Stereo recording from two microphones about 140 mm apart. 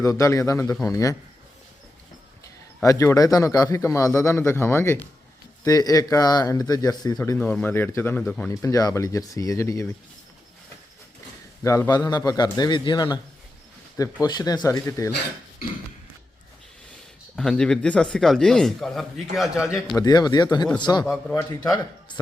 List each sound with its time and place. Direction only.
0.0 s a man's voice: 25° left (ahead or behind)
2.8 s a man's voice: 20° left (ahead or behind)
7.3 s speech: 10° left (ahead or behind)
8.6 s a man's voice: 25° left (ahead or behind)
11.6 s a man's voice: 20° left (ahead or behind)
17.3 s speech: 5° left (ahead or behind)
20.0 s a man's voice: 30° left (ahead or behind)
21.0 s speech: 5° left (ahead or behind)
21.3 s a man's voice: 25° left (ahead or behind)